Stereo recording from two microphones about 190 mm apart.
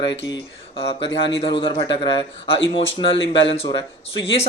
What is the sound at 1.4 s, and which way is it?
A man's voice, 30° left (ahead or behind).